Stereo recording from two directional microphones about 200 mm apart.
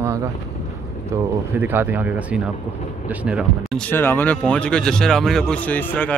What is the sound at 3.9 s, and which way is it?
Speech, 10° left (ahead or behind).